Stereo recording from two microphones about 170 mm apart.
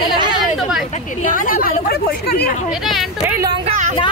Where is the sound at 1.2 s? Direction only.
55° left (ahead or behind); by 2.5 s 70° left (ahead or behind).